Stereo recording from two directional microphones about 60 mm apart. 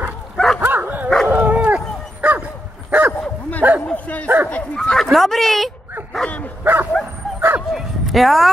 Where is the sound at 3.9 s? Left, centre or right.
Left.